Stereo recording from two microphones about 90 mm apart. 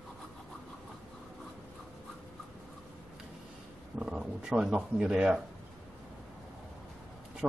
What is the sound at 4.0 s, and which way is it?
Speech, 10° right (ahead or behind).